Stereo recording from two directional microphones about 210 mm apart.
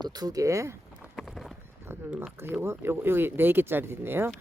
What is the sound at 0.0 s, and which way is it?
Speech, 20° right (ahead or behind).